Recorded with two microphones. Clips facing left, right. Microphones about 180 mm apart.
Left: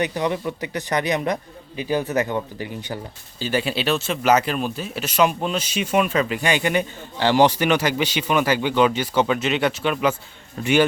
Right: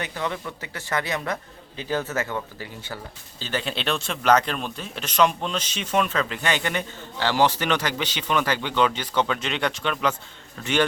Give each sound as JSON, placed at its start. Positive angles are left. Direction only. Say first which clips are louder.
{"t": 0.0, "sound": "speech", "louder": "left 7 dB", "side_deg": 15}